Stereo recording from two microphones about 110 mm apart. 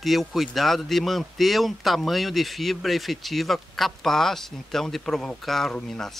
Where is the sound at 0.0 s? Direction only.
Centre (ahead or behind).